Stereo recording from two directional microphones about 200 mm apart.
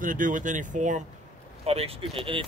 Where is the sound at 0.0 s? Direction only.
40° right (ahead or behind).